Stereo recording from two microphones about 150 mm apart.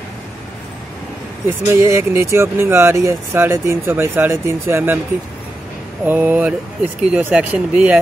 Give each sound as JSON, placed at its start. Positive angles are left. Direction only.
{"t": 1.7, "sound": "speech", "side_deg": -20}
{"t": 6.0, "sound": "speech", "side_deg": -10}